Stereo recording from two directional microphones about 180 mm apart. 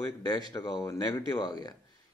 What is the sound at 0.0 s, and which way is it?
Speech, 20° left (ahead or behind).